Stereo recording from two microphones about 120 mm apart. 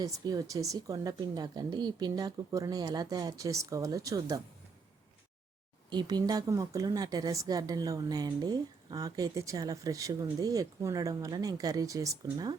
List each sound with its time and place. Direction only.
0.0 s a woman's voice: 30° right (ahead or behind)
5.9 s a woman's voice: 35° right (ahead or behind)